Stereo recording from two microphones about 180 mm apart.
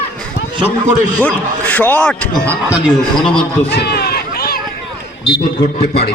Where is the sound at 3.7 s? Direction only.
60° left (ahead or behind).